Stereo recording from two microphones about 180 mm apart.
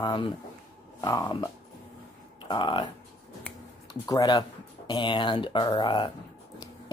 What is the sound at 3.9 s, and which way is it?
Speech, 20° left (ahead or behind).